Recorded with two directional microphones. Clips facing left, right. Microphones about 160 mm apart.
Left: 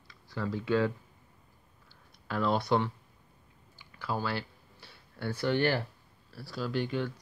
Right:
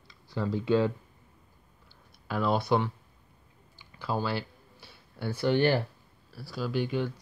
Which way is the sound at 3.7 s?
20° right (ahead or behind).